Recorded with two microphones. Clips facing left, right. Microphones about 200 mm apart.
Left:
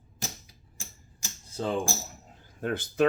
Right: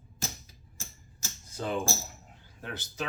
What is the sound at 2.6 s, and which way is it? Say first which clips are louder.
Speech: left 11 dB; 55° left (ahead or behind).